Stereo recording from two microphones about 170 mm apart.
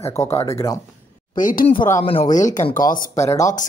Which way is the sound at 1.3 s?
50° left (ahead or behind).